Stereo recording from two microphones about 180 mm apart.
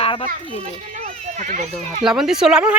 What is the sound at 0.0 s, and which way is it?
Children playing, 30° left (ahead or behind).